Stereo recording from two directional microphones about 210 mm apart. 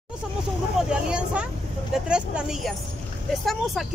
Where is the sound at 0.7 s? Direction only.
5° right (ahead or behind).